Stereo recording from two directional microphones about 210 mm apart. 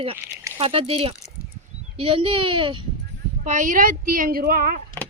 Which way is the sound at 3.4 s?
35° right (ahead or behind).